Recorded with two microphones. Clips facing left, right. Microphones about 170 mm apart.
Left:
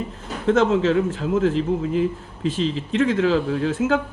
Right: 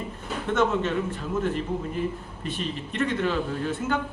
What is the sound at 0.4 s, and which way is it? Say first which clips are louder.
Speech: left 7 dB; 90° left.